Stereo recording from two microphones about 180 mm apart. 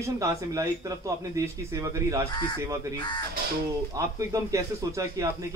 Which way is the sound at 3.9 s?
20° right (ahead or behind).